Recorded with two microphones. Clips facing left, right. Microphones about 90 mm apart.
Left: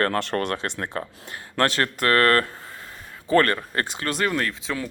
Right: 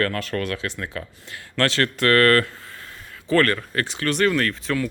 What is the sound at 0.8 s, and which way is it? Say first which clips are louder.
Speech: left 2 dB; 45° left (ahead or behind).